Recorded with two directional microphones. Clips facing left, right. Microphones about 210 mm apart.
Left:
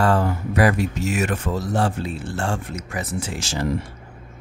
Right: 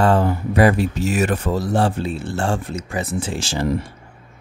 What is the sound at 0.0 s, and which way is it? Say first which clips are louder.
Speech: right 3 dB; 25° right (ahead or behind).